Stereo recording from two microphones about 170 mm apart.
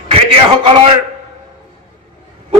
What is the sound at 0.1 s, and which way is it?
Speech, 35° right (ahead or behind).